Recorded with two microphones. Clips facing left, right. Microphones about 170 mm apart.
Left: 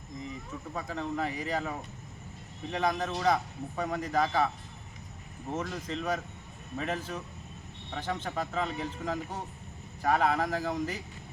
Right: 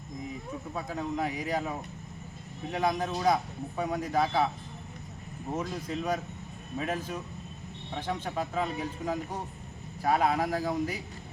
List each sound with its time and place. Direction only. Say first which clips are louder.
0.7 s a man's voice: right 1 dB; 10° right (ahead or behind)
5.5 s a man's voice: right 1 dB; 10° right (ahead or behind)